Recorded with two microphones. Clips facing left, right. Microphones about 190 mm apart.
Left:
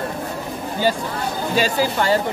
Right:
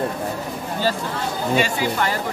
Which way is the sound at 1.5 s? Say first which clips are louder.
Left 2 dB; 35° left (ahead or behind).